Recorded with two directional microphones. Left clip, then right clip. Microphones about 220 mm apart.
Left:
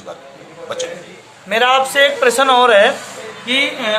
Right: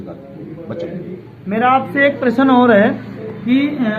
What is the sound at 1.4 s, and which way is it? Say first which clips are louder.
Speech: left 1 dB; 75° left (ahead or behind).